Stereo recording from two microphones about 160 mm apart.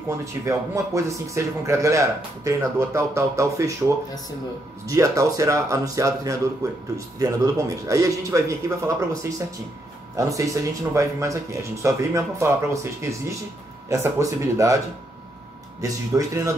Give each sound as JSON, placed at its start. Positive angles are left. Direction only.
{"t": 0.2, "sound": "speech", "side_deg": -20}
{"t": 13.8, "sound": "speech", "side_deg": -20}
{"t": 15.8, "sound": "speech", "side_deg": -20}